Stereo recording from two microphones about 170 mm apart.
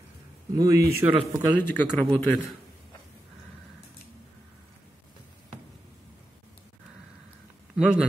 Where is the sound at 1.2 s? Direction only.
10° left (ahead or behind).